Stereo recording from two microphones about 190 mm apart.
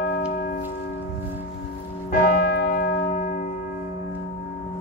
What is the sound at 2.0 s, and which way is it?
Church bell, 50° left (ahead or behind).